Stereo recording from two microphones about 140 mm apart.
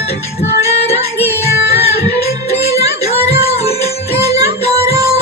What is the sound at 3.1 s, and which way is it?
Music, 45° left (ahead or behind).